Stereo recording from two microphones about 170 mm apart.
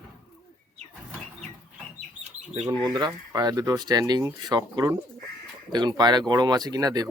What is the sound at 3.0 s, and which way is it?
Speech, 20° right (ahead or behind).